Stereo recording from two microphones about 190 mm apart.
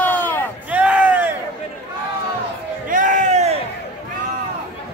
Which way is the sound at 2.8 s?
45° right (ahead or behind).